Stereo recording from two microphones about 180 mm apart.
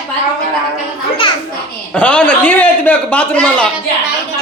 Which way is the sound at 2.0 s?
5° left (ahead or behind).